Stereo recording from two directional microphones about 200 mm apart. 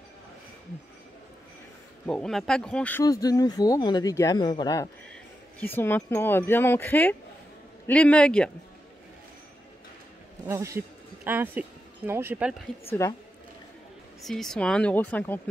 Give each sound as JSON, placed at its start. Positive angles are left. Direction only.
{"t": 2.0, "sound": "speech", "side_deg": 5}
{"t": 10.4, "sound": "speech", "side_deg": -15}
{"t": 13.0, "sound": "speech", "side_deg": 15}
{"t": 14.2, "sound": "speech", "side_deg": 0}